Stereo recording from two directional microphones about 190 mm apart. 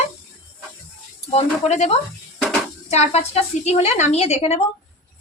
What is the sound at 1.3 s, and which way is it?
Speech, 35° left (ahead or behind).